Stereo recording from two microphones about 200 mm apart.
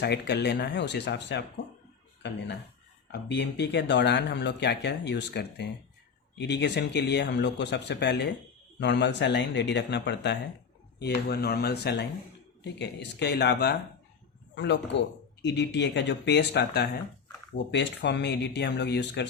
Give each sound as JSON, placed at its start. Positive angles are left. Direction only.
{"t": 0.0, "sound": "speech", "side_deg": 55}
{"t": 3.1, "sound": "speech", "side_deg": 60}